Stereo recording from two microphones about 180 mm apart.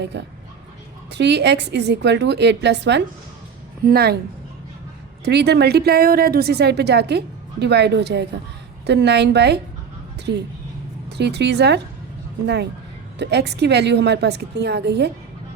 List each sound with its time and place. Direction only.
0.0 s speech: 75° right (ahead or behind)
3.8 s a woman's voice: 60° right (ahead or behind)
5.2 s speech: 65° right (ahead or behind)
13.1 s speech: 70° right (ahead or behind)